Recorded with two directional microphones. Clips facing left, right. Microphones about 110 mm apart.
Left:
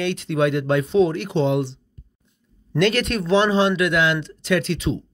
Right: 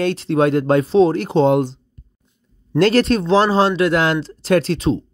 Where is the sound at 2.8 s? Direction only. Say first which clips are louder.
Right 6 dB; 35° right (ahead or behind).